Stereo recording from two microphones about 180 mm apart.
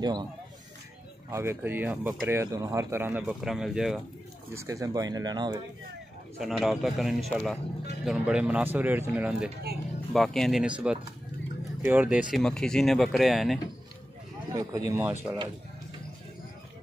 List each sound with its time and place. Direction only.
0.0 s speech: 25° right (ahead or behind)
1.3 s speech: 15° right (ahead or behind)
4.6 s speech: 20° right (ahead or behind)
6.4 s speech: centre (ahead or behind)
10.1 s speech: centre (ahead or behind)
14.5 s speech: 20° right (ahead or behind)